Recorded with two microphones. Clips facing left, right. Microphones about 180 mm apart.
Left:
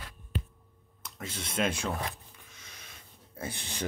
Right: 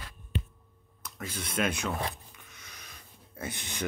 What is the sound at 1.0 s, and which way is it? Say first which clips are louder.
Speech: right 1 dB; 25° left (ahead or behind).